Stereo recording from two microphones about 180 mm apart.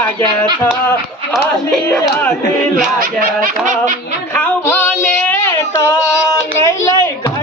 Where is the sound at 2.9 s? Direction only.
50° right (ahead or behind).